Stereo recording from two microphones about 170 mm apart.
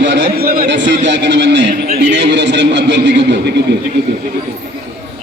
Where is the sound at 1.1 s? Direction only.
90° right.